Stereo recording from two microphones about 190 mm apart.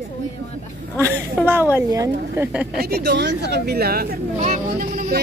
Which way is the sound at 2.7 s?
55° right (ahead or behind).